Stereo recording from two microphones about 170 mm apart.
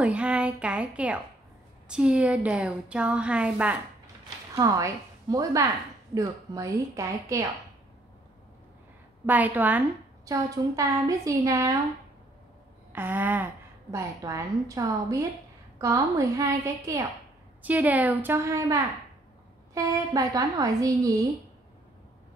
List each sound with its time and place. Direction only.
0.0 s a woman's voice: 5° right (ahead or behind)
4.6 s a woman's voice: 20° right (ahead or behind)
9.2 s a woman's voice: 10° right (ahead or behind)
12.9 s a woman's voice: 10° right (ahead or behind)